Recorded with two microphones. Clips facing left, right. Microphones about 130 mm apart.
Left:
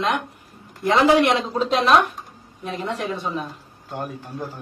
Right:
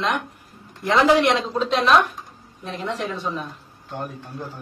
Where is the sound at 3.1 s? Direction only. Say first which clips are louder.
Left 1 dB; 5° left (ahead or behind).